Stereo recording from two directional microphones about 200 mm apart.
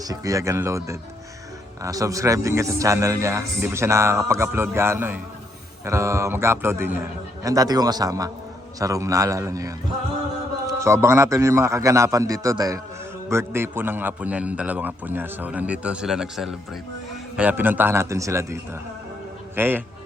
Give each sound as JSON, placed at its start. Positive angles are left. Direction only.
{"t": 0.0, "sound": "a man's voice", "side_deg": -15}